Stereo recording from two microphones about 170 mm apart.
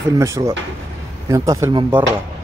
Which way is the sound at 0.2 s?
15° right (ahead or behind).